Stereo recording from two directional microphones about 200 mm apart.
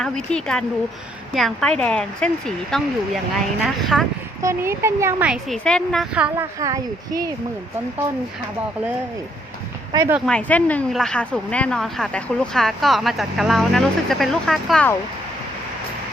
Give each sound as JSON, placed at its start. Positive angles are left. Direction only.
{"t": 0.0, "sound": "speech", "side_deg": 5}
{"t": 3.9, "sound": "speech", "side_deg": -5}
{"t": 5.3, "sound": "speech", "side_deg": 5}
{"t": 6.6, "sound": "speech", "side_deg": -15}
{"t": 9.9, "sound": "speech", "side_deg": -15}
{"t": 10.2, "sound": "speech", "side_deg": 5}